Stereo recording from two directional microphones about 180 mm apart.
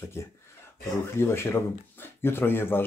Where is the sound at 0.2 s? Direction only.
15° left (ahead or behind).